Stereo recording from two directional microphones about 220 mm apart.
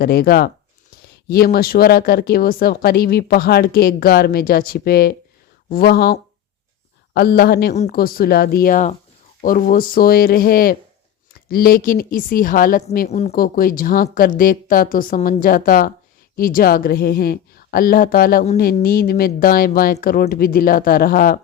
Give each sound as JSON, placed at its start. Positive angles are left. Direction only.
{"t": 0.0, "sound": "speech", "side_deg": 45}